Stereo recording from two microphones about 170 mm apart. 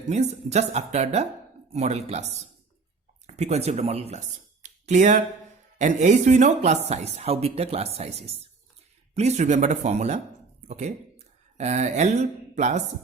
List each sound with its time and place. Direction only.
0.1 s speech: 40° right (ahead or behind)
4.6 s a sound: 45° right (ahead or behind)
5.8 s speech: 45° right (ahead or behind)